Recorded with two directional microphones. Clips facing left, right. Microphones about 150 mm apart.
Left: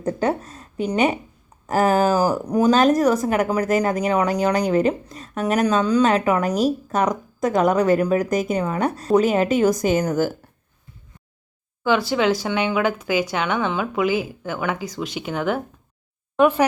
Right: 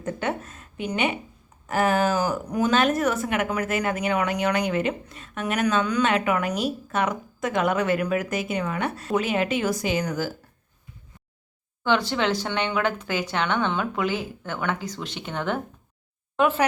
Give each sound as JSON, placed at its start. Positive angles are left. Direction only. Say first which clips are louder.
{"t": 0.0, "sound": "a woman's voice", "louder": "left 6 dB", "side_deg": 35}
{"t": 11.8, "sound": "speech", "louder": "left 4 dB", "side_deg": 10}